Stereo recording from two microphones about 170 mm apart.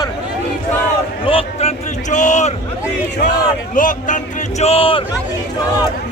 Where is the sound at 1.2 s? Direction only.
35° left (ahead or behind).